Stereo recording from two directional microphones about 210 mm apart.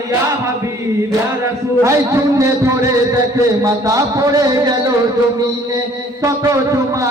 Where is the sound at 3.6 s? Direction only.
15° right (ahead or behind).